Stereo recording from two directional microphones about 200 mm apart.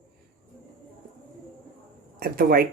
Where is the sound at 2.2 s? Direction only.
45° right (ahead or behind).